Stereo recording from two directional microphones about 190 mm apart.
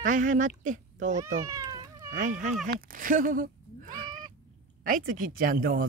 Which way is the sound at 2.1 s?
40° right (ahead or behind).